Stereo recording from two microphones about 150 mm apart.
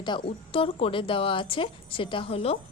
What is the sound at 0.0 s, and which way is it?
A woman's voice, 35° left (ahead or behind).